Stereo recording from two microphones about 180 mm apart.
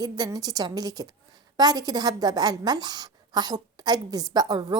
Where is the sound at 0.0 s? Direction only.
20° right (ahead or behind).